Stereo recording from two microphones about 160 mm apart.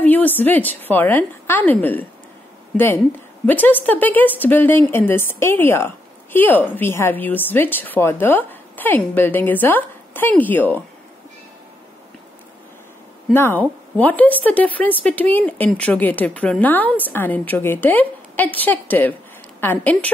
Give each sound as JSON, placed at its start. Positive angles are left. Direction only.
{"t": 0.0, "sound": "a woman's voice", "side_deg": 10}
{"t": 13.3, "sound": "speech", "side_deg": 15}